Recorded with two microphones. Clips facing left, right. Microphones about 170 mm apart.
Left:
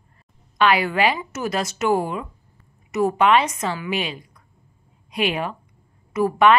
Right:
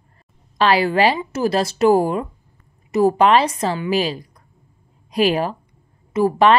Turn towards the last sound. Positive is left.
turn(degrees=-30)  # may be behind; listen again after turning